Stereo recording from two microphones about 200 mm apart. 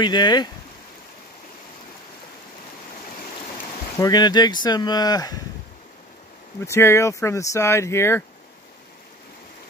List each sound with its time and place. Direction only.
0.0 s speech: 20° left (ahead or behind)
4.0 s speech: 20° left (ahead or behind)
6.6 s speech: 15° left (ahead or behind)